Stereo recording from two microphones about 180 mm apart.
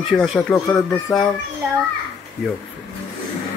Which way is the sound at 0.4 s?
10° left (ahead or behind).